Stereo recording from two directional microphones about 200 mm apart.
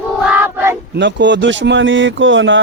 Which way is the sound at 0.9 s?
60° right (ahead or behind).